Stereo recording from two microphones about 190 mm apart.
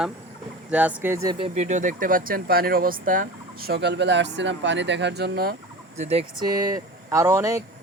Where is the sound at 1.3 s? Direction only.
30° right (ahead or behind); by 5.5 s 55° right (ahead or behind).